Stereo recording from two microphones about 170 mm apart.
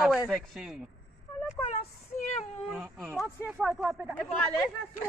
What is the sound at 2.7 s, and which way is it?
A man's voice, centre (ahead or behind).